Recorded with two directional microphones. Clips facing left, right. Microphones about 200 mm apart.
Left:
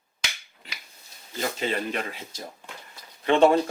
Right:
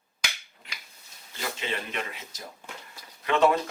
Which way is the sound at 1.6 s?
40° left (ahead or behind).